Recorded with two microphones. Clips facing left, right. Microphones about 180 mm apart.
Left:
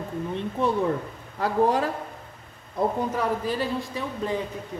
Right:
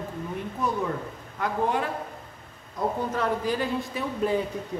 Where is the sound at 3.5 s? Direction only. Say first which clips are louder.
Even; centre (ahead or behind).